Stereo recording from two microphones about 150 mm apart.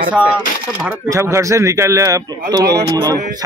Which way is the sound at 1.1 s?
20° right (ahead or behind).